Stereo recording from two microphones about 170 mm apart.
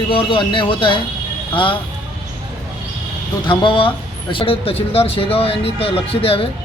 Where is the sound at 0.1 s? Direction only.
30° left (ahead or behind).